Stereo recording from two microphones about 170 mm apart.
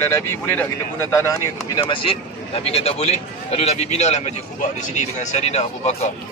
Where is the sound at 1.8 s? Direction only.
30° left (ahead or behind).